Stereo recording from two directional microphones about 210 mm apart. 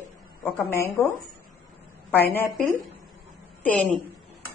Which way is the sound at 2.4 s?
10° left (ahead or behind).